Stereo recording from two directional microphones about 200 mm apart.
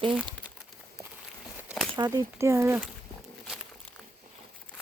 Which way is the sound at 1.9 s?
20° right (ahead or behind).